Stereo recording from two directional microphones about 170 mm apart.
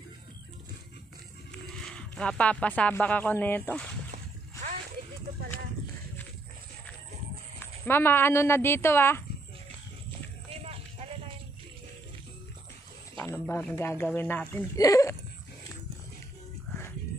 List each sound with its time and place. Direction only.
1.5 s speech: 5° left (ahead or behind)
7.8 s speech: 15° left (ahead or behind)
10.6 s clip-clop: 35° right (ahead or behind)
13.1 s a sound: 15° left (ahead or behind)
13.7 s speech: 15° left (ahead or behind)